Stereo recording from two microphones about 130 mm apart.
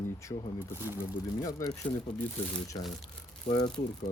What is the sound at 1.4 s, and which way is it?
Speech, 30° left (ahead or behind).